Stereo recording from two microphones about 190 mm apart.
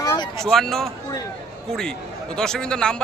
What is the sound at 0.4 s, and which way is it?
Speech, centre (ahead or behind).